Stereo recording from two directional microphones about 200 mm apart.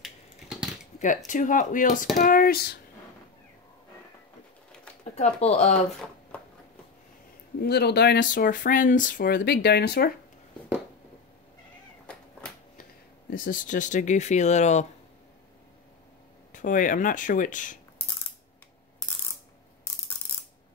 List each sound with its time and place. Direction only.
0.0 s crushing: centre (ahead or behind)
0.9 s speech: 40° left (ahead or behind)
5.1 s speech: 30° left (ahead or behind)
7.6 s speech: 55° left (ahead or behind)
12.1 s cat: 5° left (ahead or behind)
13.3 s speech: 40° left (ahead or behind)
16.5 s speech: 40° left (ahead or behind)